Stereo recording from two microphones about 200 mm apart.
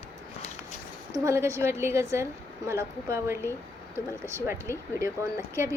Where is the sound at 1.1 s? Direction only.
15° right (ahead or behind).